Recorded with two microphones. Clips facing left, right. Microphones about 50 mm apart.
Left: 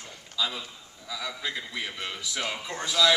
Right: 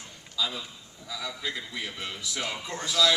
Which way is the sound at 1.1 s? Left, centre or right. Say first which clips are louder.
Left 1 dB; centre.